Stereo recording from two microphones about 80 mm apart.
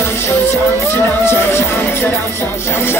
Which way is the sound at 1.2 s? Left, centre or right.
Left.